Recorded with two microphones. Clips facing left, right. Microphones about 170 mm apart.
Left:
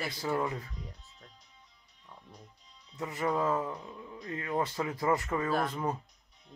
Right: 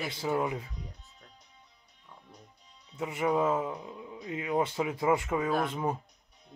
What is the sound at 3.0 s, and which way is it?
Speech, 15° right (ahead or behind).